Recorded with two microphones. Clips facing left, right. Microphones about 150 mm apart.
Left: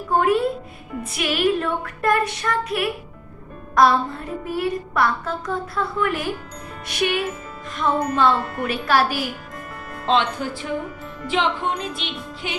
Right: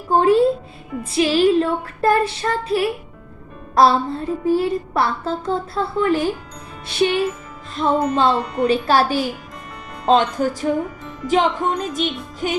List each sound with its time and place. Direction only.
0.1 s music: 30° right (ahead or behind)
10.1 s speech: 40° right (ahead or behind)
11.3 s music: 40° right (ahead or behind)